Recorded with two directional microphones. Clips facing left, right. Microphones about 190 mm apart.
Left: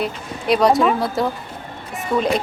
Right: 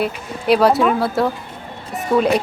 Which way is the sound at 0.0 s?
5° right (ahead or behind).